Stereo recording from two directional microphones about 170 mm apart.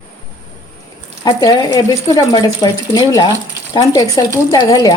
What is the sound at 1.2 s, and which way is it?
Speech, 25° left (ahead or behind).